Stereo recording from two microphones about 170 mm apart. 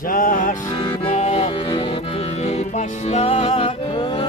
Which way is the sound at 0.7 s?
25° left (ahead or behind).